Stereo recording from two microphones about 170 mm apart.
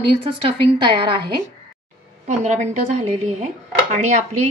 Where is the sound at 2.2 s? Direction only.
45° right (ahead or behind).